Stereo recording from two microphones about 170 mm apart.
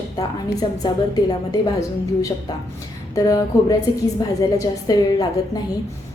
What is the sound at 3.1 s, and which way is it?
A woman's voice, 20° left (ahead or behind).